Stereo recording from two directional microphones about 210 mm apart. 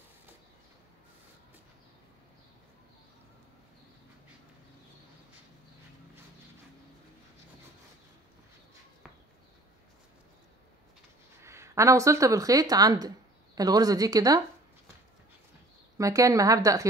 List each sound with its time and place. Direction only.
11.4 s speech: 15° right (ahead or behind)
16.0 s speech: 15° right (ahead or behind)